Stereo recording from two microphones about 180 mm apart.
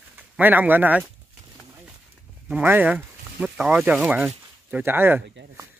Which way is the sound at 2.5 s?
10° right (ahead or behind).